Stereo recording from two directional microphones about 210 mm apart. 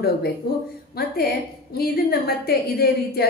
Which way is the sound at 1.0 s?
45° left (ahead or behind).